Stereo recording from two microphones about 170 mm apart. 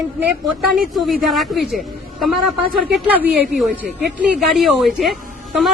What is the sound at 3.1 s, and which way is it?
Speech, 10° right (ahead or behind).